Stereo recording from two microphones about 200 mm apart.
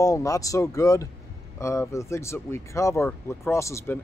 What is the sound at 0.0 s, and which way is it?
Speech, 15° left (ahead or behind).